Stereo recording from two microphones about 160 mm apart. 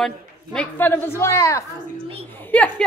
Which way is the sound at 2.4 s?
10° left (ahead or behind).